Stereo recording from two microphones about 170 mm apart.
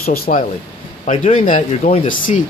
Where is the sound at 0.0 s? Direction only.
60° left (ahead or behind).